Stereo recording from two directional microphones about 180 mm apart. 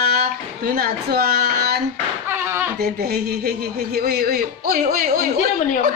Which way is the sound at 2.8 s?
60° right (ahead or behind).